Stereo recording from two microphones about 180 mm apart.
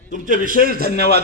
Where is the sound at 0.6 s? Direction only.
60° right (ahead or behind).